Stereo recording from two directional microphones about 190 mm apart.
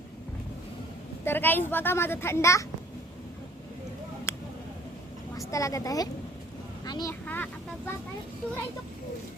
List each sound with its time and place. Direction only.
1.2 s a child's voice: 10° left (ahead or behind)
4.3 s a sound: 15° left (ahead or behind)
5.5 s a child's voice: 15° left (ahead or behind)